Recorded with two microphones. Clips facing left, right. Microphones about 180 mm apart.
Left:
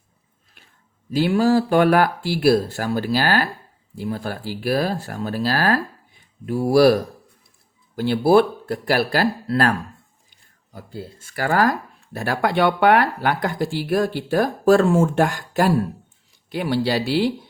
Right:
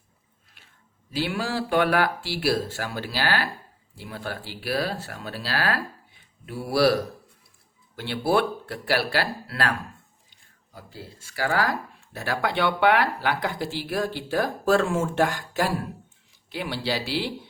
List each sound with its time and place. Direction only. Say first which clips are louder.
1.1 s speech: left 10 dB; 40° left (ahead or behind)
7.9 s speech: left 8 dB; 45° left (ahead or behind)
10.8 s speech: left 7 dB; 50° left (ahead or behind)